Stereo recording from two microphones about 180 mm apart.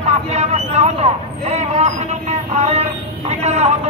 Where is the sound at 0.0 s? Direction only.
35° right (ahead or behind).